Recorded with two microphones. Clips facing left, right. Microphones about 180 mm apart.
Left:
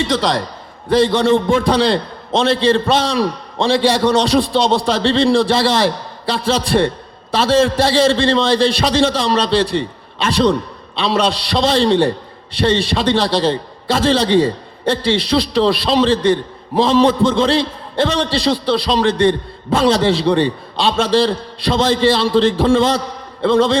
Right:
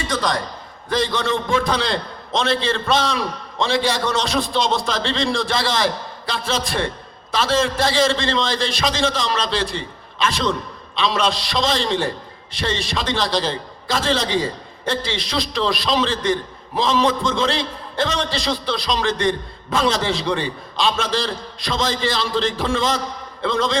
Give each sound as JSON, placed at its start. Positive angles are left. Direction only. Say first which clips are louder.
{"t": 0.9, "sound": "a man's voice", "louder": "left 8 dB", "side_deg": 30}